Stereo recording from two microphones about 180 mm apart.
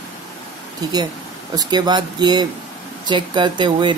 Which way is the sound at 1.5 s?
25° right (ahead or behind).